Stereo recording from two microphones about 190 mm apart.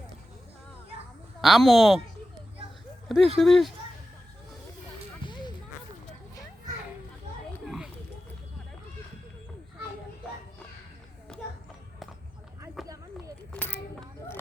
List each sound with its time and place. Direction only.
1.4 s speech: centre (ahead or behind)
3.1 s speech: centre (ahead or behind)
5.2 s music: 25° left (ahead or behind)
7.6 s a sound: centre (ahead or behind)
12.8 s run: centre (ahead or behind)
13.5 s a sound: 10° left (ahead or behind)